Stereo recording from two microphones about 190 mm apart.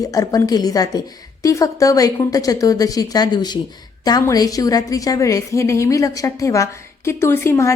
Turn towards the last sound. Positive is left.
turn(degrees=15)  # may be behind; listen again after turning